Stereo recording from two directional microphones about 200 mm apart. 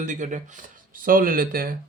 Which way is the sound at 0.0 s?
40° right (ahead or behind).